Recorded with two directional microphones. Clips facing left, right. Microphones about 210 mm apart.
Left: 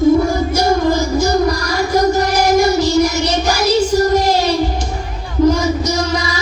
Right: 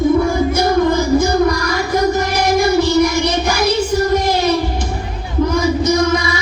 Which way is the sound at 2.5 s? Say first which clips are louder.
Right 1 dB; 55° right (ahead or behind).